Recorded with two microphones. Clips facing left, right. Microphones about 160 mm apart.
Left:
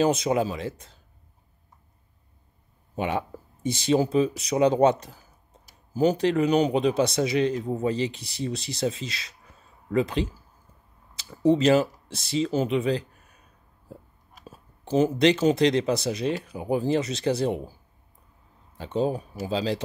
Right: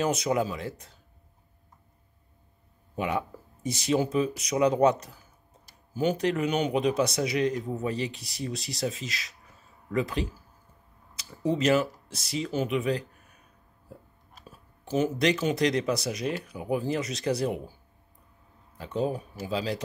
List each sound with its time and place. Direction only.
0.0 s speech: 25° left (ahead or behind)
3.0 s speech: 25° left (ahead or behind)
11.5 s speech: 30° left (ahead or behind)
14.4 s speech: 30° left (ahead or behind)
18.8 s speech: 30° left (ahead or behind)